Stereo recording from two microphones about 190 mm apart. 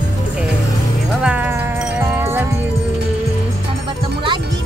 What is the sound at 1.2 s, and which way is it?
Music, 10° right (ahead or behind).